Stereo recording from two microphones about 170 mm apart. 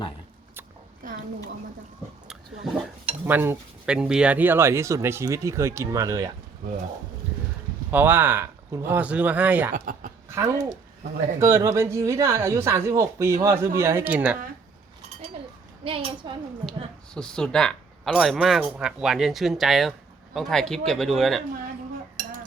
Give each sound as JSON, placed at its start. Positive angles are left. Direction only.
{"t": 3.2, "sound": "speech", "side_deg": -10}
{"t": 7.9, "sound": "speech", "side_deg": -10}
{"t": 9.7, "sound": "speech", "side_deg": -55}
{"t": 10.2, "sound": "speech", "side_deg": -15}
{"t": 15.8, "sound": "a child's voice", "side_deg": -35}
{"t": 17.2, "sound": "speech", "side_deg": 5}